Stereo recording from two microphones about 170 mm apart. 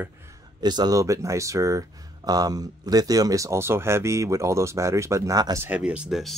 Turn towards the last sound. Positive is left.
turn(degrees=0)  # may be behind; listen again after turning